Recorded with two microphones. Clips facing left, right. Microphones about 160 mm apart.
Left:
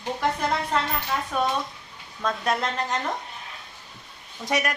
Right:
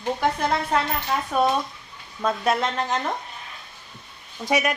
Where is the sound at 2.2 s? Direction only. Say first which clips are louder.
Right 3 dB; 5° right (ahead or behind).